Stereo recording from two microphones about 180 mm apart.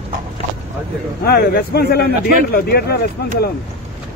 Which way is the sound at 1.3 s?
60° left (ahead or behind).